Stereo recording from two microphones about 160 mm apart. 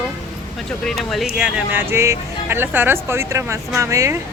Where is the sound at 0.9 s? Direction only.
Centre (ahead or behind).